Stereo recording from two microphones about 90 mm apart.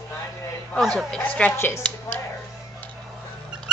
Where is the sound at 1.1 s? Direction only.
15° left (ahead or behind).